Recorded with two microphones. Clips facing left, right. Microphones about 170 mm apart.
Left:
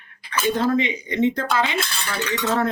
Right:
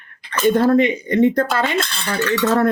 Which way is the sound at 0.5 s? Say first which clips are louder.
Right 6 dB; 60° right (ahead or behind).